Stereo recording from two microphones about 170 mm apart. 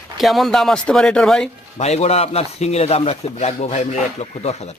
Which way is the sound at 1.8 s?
40° left (ahead or behind).